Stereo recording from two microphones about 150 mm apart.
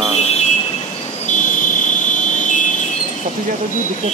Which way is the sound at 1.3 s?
60° left (ahead or behind).